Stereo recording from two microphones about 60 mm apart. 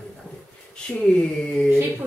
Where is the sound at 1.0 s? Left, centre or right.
Centre.